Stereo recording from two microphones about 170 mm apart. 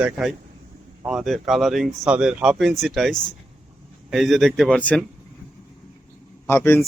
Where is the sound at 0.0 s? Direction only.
Centre (ahead or behind).